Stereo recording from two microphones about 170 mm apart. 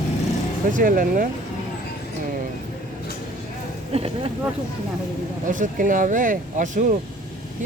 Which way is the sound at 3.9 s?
35° right (ahead or behind).